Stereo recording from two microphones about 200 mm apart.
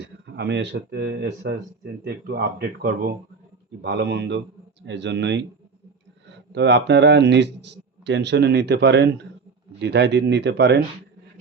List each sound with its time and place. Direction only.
0.0 s speech: 60° right (ahead or behind)
6.5 s speech: 60° right (ahead or behind)